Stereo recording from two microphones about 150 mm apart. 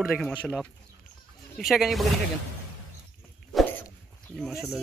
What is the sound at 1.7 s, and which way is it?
Speech, centre (ahead or behind).